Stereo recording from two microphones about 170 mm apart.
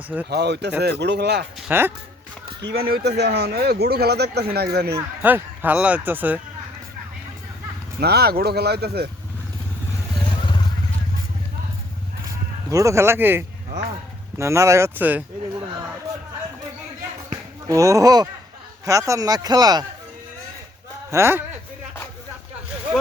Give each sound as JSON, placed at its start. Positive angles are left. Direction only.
{"t": 0.3, "sound": "speech", "side_deg": -80}
{"t": 1.6, "sound": "speech", "side_deg": -10}
{"t": 2.6, "sound": "speech", "side_deg": -75}
{"t": 4.9, "sound": "a man's voice", "side_deg": -10}
{"t": 7.9, "sound": "speech", "side_deg": -70}
{"t": 10.2, "sound": "vehicle", "side_deg": 30}
{"t": 12.7, "sound": "a man's voice", "side_deg": -15}
{"t": 17.7, "sound": "speech", "side_deg": -20}
{"t": 21.1, "sound": "a man's voice", "side_deg": -15}